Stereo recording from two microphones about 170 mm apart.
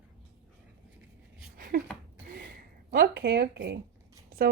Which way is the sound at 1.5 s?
55° right (ahead or behind).